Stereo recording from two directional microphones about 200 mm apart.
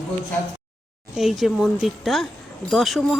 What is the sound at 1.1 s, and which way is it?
Jingle bell, centre (ahead or behind).